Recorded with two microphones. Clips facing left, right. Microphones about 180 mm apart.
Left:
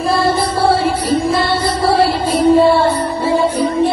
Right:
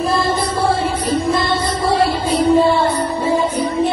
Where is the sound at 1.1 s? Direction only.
30° left (ahead or behind).